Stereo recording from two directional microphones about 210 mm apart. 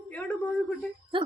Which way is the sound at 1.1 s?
25° right (ahead or behind).